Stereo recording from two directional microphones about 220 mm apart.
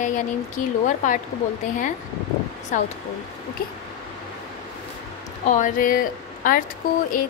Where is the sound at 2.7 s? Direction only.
35° left (ahead or behind).